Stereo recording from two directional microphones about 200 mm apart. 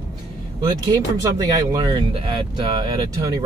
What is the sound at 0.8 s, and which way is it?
Speech, 20° right (ahead or behind).